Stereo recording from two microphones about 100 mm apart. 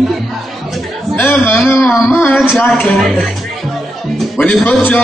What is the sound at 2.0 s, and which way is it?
Speech, 20° left (ahead or behind).